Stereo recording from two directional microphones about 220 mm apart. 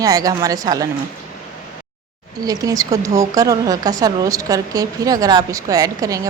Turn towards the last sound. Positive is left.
turn(degrees=-15)  # may be behind; listen again after turning